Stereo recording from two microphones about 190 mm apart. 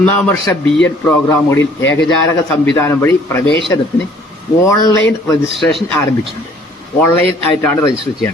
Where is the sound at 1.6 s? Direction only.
85° left.